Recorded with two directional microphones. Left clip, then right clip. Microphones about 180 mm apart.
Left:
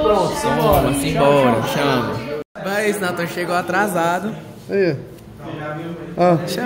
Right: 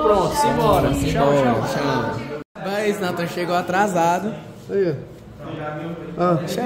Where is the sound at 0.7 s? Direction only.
Centre (ahead or behind).